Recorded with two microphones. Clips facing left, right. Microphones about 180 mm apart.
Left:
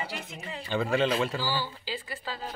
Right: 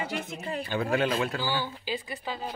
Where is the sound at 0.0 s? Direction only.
55° right (ahead or behind).